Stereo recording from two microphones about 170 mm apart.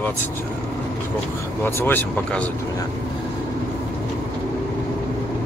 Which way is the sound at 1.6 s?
10° left (ahead or behind).